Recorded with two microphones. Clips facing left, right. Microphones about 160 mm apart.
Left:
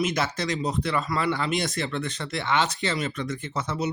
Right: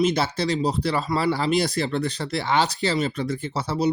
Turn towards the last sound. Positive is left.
turn(degrees=-35)  # may be behind; listen again after turning